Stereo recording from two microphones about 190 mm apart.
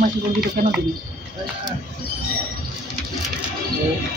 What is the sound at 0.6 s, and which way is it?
Speech, 45° right (ahead or behind).